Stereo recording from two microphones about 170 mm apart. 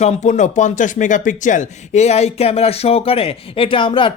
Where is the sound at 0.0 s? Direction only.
40° left (ahead or behind).